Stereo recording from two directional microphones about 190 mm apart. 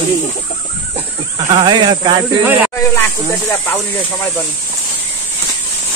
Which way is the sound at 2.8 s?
10° left (ahead or behind).